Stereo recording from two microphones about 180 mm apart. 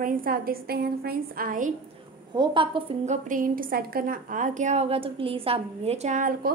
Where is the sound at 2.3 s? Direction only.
25° right (ahead or behind).